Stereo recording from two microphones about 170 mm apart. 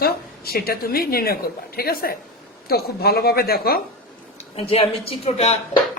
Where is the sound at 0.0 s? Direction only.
65° left (ahead or behind).